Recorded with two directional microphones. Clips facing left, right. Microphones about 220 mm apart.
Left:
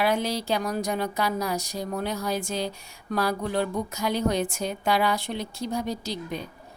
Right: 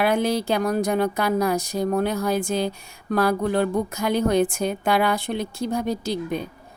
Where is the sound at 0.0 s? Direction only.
55° right (ahead or behind).